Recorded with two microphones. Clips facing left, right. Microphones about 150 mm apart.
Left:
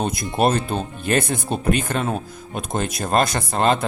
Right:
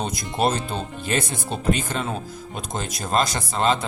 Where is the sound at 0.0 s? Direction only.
55° left (ahead or behind).